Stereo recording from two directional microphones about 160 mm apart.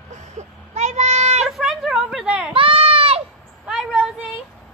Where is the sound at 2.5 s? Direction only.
35° right (ahead or behind).